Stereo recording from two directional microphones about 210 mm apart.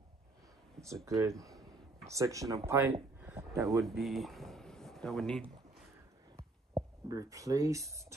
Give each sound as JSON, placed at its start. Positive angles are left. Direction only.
{"t": 1.0, "sound": "speech", "side_deg": -15}
{"t": 3.8, "sound": "speech", "side_deg": 0}
{"t": 6.3, "sound": "heart murmur", "side_deg": -15}